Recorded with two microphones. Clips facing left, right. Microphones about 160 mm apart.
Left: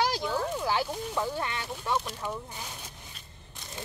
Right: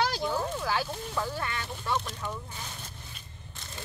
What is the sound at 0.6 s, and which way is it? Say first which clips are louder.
Speech: left 2 dB; 20° left (ahead or behind).